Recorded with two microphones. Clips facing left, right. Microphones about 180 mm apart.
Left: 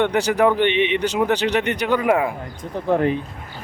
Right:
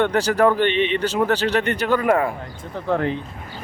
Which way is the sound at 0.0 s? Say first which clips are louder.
Even; 15° left (ahead or behind).